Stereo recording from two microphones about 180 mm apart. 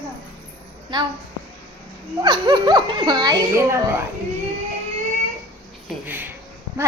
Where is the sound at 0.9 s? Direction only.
25° right (ahead or behind).